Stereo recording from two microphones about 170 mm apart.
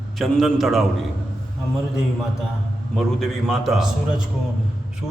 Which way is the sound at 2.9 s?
Centre (ahead or behind).